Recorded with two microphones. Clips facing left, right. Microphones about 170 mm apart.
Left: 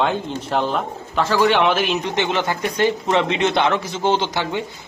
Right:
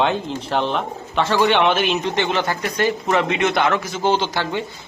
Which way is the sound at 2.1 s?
15° left (ahead or behind).